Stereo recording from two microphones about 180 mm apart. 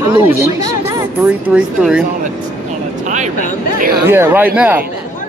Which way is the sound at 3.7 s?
55° right (ahead or behind).